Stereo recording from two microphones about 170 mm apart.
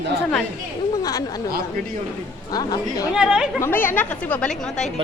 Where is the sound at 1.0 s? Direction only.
20° left (ahead or behind).